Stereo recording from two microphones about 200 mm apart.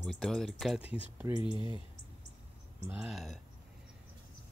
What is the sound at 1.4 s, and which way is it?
Speech, 25° left (ahead or behind).